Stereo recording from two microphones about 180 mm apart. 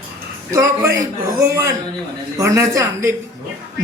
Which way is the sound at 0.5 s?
15° right (ahead or behind).